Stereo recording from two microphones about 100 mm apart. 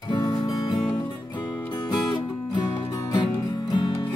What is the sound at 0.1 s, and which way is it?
Music, 45° left (ahead or behind).